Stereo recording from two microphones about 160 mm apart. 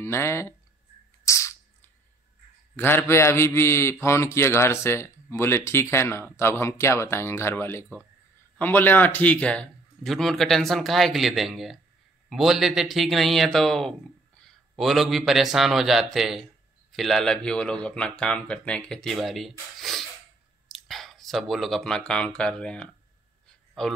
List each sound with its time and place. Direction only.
0.0 s a man's voice: 15° left (ahead or behind)
1.2 s a sound: 20° left (ahead or behind)
2.7 s a man's voice: 15° left (ahead or behind)